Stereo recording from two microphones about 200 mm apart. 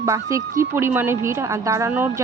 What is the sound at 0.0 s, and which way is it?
Speech, 15° right (ahead or behind).